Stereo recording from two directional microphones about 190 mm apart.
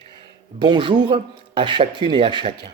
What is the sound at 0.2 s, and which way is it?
Speech, 25° right (ahead or behind).